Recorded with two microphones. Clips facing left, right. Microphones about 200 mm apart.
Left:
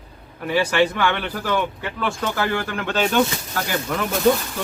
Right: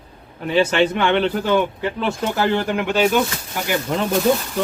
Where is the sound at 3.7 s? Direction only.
25° right (ahead or behind).